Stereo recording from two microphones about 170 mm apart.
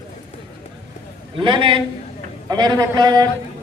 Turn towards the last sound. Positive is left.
turn(degrees=-25)  # may be behind; listen again after turning